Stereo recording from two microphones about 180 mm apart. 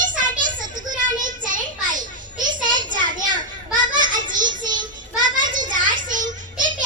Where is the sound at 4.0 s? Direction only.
45° right (ahead or behind).